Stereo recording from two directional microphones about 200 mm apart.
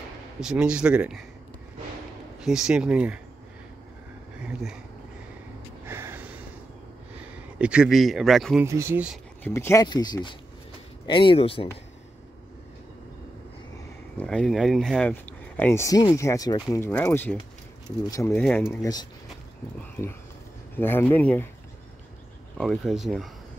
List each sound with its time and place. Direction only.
0.4 s speech: 5° right (ahead or behind)
2.4 s speech: 5° right (ahead or behind)
4.4 s speech: 5° right (ahead or behind)
5.9 s gasp: 10° right (ahead or behind)
7.5 s speech: 5° right (ahead or behind)
8.6 s speech: 15° right (ahead or behind)
9.4 s speech: 15° left (ahead or behind)
14.1 s speech: 5° left (ahead or behind)
20.7 s speech: 10° left (ahead or behind)
22.6 s speech: centre (ahead or behind)